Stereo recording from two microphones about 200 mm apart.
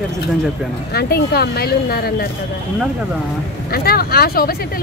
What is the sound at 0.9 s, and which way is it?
A woman's voice, 50° left (ahead or behind).